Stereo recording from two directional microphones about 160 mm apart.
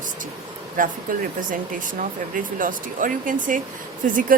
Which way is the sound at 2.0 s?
55° right (ahead or behind).